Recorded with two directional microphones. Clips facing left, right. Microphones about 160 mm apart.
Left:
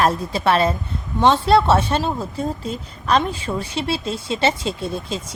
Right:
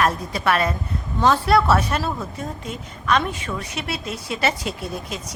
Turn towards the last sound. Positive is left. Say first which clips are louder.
# left 4 dB
turn(degrees=30)  # may be behind; listen again after turning